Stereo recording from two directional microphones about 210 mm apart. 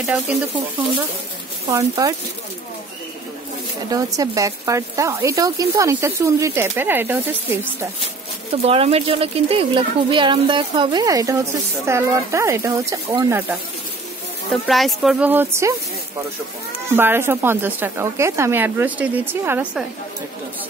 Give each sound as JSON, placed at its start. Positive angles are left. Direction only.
{"t": 0.0, "sound": "speech", "side_deg": -5}
{"t": 1.7, "sound": "speech", "side_deg": -15}
{"t": 3.9, "sound": "speech", "side_deg": -15}
{"t": 8.6, "sound": "speech", "side_deg": -30}
{"t": 14.5, "sound": "speech", "side_deg": 0}
{"t": 16.9, "sound": "speech", "side_deg": -10}